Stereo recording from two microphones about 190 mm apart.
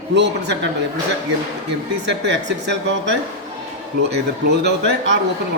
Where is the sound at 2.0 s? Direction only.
65° right (ahead or behind).